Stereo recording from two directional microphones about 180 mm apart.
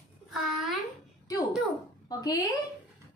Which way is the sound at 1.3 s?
20° left (ahead or behind).